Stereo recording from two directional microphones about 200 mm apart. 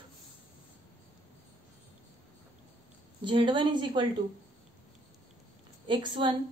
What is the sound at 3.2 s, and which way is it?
Speech, 25° right (ahead or behind).